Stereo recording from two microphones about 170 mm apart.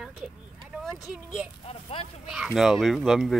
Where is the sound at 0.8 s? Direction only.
Centre (ahead or behind).